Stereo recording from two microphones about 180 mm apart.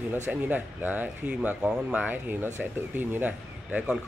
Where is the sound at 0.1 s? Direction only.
10° right (ahead or behind).